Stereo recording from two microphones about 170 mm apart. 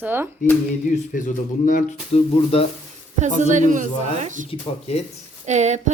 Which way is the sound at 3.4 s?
45° right (ahead or behind).